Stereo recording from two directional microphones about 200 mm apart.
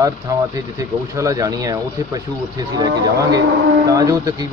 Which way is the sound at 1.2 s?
15° right (ahead or behind).